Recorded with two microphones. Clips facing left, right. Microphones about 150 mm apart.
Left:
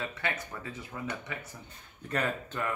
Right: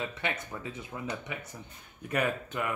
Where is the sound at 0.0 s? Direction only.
20° right (ahead or behind).